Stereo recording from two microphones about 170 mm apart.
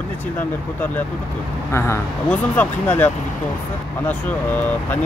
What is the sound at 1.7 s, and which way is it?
Speech, 10° left (ahead or behind).